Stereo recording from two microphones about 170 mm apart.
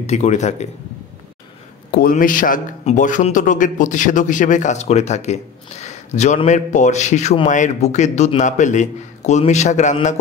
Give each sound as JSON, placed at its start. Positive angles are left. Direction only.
{"t": 0.0, "sound": "a man's voice", "side_deg": 40}
{"t": 1.9, "sound": "a man's voice", "side_deg": 60}